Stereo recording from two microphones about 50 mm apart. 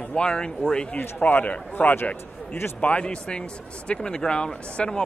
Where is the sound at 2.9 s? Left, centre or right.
Left.